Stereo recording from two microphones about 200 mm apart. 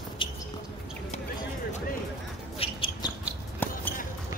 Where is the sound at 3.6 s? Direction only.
10° left (ahead or behind).